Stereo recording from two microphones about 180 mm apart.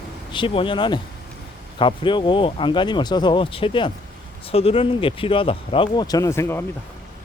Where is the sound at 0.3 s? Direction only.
30° left (ahead or behind).